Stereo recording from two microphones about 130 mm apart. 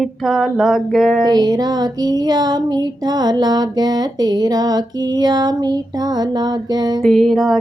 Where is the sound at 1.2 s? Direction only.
30° right (ahead or behind).